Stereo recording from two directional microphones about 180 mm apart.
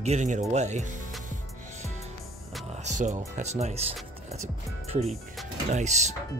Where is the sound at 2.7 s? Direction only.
40° right (ahead or behind).